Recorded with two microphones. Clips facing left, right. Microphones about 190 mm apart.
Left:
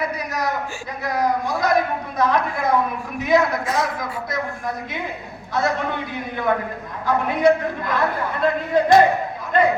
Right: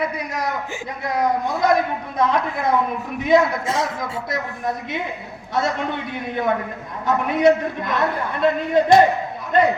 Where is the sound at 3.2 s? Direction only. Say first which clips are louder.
Right 2 dB; 25° right (ahead or behind).